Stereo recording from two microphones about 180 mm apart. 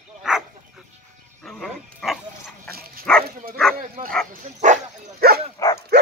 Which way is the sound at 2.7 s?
55° right (ahead or behind).